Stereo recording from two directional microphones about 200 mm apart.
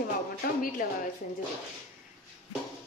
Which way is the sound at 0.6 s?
45° left (ahead or behind).